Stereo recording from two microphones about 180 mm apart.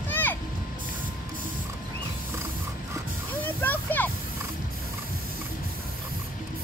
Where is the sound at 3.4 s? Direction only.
10° left (ahead or behind).